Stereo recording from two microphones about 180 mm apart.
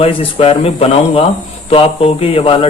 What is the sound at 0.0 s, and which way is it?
Speech, 30° left (ahead or behind).